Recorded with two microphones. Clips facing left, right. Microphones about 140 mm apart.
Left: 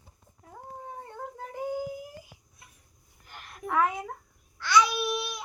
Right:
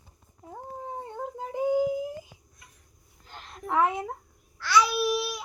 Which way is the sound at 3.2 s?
20° right (ahead or behind).